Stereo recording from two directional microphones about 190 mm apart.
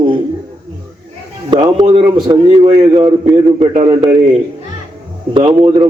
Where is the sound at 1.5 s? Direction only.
25° right (ahead or behind).